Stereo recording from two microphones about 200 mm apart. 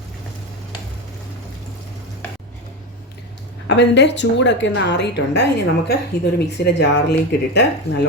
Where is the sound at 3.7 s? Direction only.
60° left (ahead or behind).